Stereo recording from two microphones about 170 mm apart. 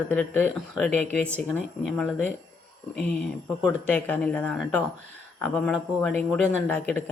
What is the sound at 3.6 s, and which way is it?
Speech, 10° left (ahead or behind).